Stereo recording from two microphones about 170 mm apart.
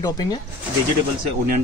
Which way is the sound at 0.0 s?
25° left (ahead or behind).